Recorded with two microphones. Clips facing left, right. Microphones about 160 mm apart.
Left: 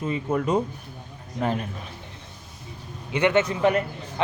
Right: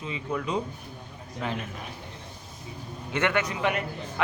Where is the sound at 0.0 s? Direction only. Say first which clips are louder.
Left 6 dB; 50° left (ahead or behind).